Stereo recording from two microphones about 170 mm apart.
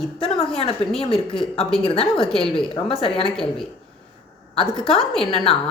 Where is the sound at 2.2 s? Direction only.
5° left (ahead or behind).